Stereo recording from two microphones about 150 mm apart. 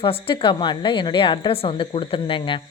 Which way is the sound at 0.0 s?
35° left (ahead or behind).